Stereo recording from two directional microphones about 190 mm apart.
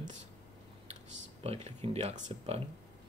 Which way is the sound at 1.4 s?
30° right (ahead or behind).